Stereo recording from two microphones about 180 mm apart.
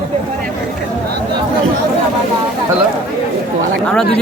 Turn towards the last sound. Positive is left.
turn(degrees=5)  # may be behind; listen again after turning